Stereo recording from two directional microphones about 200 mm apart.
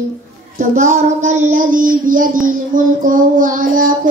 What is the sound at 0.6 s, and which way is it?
Child singing, 40° right (ahead or behind).